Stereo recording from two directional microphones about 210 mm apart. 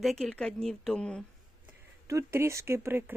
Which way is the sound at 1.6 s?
15° right (ahead or behind).